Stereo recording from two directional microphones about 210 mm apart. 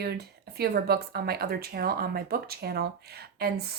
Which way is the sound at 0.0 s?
50° right (ahead or behind).